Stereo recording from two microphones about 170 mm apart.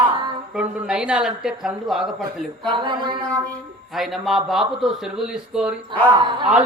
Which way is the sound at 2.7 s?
25° right (ahead or behind).